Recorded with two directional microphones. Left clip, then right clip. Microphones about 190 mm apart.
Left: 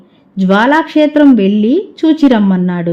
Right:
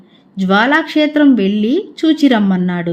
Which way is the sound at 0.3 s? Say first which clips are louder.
Left 2 dB; 25° left (ahead or behind).